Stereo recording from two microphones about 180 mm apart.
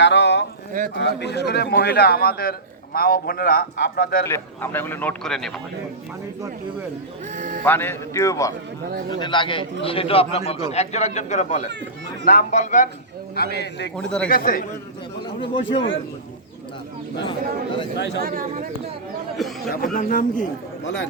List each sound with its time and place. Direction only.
0.0 s a sound: 75° left (ahead or behind)
0.9 s a man's voice: 70° left (ahead or behind)
4.3 s a man's voice: 10° left (ahead or behind)
7.3 s a sound: 45° right (ahead or behind)
7.6 s a man's voice: 10° left (ahead or behind); by 12.9 s 40° left (ahead or behind)
13.3 s a man's voice: 60° left (ahead or behind)
13.9 s speech: 5° left (ahead or behind)
14.3 s speech: 50° left (ahead or behind)
15.4 s speech: 25° left (ahead or behind)
17.9 s speech: 75° left (ahead or behind)
18.2 s speech: 50° right (ahead or behind)
19.4 s a sound: centre (ahead or behind)
19.7 s speech: 50° left (ahead or behind)